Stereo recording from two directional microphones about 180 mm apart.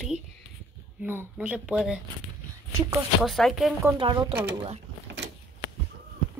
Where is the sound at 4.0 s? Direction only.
25° right (ahead or behind).